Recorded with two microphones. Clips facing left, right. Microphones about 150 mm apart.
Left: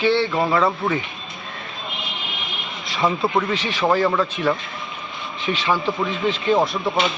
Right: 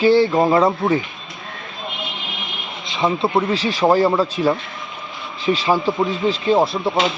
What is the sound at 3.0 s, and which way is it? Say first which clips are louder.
A man's voice: right 2 dB; 25° right (ahead or behind).